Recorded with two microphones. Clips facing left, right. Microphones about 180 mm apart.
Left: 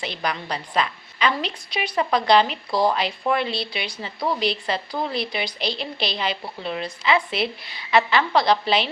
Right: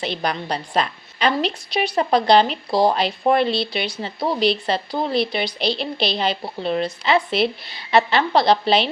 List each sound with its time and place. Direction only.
0.1 s a woman's voice: 35° right (ahead or behind)
1.4 s a woman's voice: 80° right
2.0 s a woman's voice: 30° right (ahead or behind)
3.5 s a woman's voice: 70° right (ahead or behind)
4.0 s a woman's voice: 30° right (ahead or behind)